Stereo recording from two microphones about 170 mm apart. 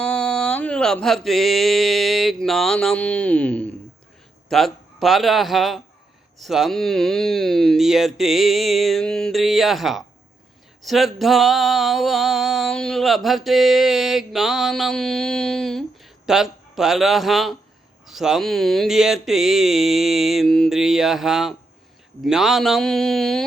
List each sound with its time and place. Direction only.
0.0 s mantra: 5° left (ahead or behind)
4.4 s a man's voice: centre (ahead or behind)
6.4 s a sound: centre (ahead or behind)